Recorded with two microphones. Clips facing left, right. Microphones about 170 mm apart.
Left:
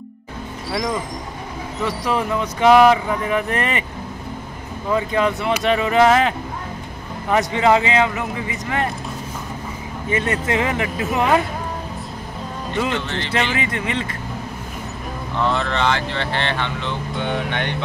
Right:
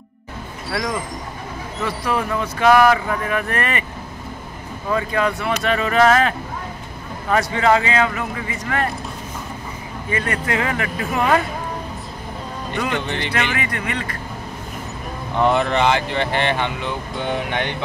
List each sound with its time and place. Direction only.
1.9 s speech: 20° left (ahead or behind)
4.9 s speech: 20° left (ahead or behind)
10.1 s speech: 20° left (ahead or behind)
12.9 s speech: 15° right (ahead or behind)
13.3 s speech: 20° left (ahead or behind)
15.3 s speech: 15° right (ahead or behind)